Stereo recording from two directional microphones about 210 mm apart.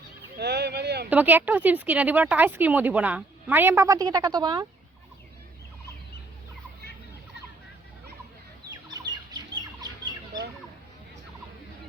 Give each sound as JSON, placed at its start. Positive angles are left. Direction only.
{"t": 0.3, "sound": "speech", "side_deg": -50}
{"t": 1.1, "sound": "speech", "side_deg": -10}
{"t": 8.7, "sound": "bird", "side_deg": -20}